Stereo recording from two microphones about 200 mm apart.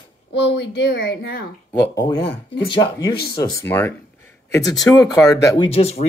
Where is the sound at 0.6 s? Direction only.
60° left (ahead or behind).